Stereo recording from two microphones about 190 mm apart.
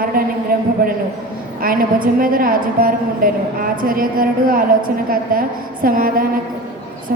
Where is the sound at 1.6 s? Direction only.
50° right (ahead or behind).